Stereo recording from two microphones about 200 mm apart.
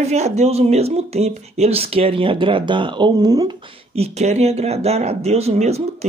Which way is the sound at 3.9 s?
30° right (ahead or behind).